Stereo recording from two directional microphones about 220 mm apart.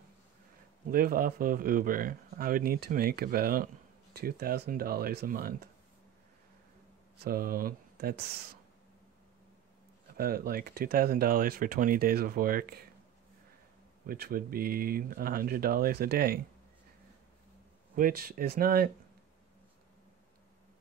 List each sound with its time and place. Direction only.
0.8 s speech: 40° right (ahead or behind)
7.2 s speech: 40° right (ahead or behind)
10.1 s speech: 40° right (ahead or behind)
14.0 s speech: 45° right (ahead or behind)
17.9 s speech: 40° right (ahead or behind)